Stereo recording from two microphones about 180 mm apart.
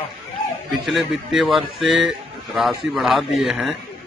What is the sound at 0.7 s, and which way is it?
Speech, centre (ahead or behind).